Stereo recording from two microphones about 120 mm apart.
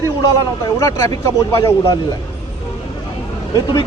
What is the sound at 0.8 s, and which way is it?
Speech, 25° left (ahead or behind).